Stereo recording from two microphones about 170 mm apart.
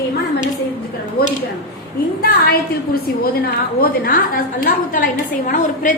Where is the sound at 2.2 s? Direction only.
65° left (ahead or behind).